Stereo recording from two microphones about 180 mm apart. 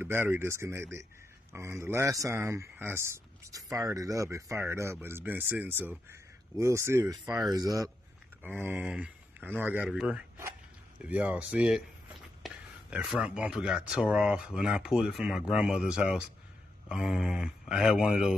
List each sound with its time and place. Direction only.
0.0 s speech: 10° right (ahead or behind)